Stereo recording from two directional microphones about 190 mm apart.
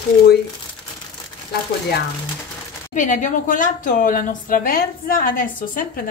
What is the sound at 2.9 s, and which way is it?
A woman's voice, 40° left (ahead or behind).